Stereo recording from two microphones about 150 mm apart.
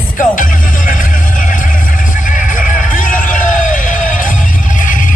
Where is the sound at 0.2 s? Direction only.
60° left (ahead or behind).